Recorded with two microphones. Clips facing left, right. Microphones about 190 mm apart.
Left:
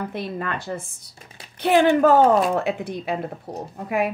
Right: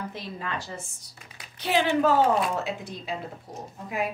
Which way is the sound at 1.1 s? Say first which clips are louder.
Left 5 dB; 35° left (ahead or behind).